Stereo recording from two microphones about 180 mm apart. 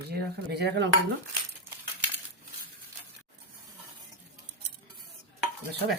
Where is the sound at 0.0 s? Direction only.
65° right (ahead or behind).